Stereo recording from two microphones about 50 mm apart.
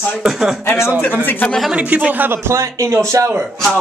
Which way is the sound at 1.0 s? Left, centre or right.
Left.